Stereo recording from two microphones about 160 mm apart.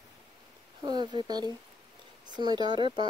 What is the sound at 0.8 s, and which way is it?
Speech, 25° right (ahead or behind).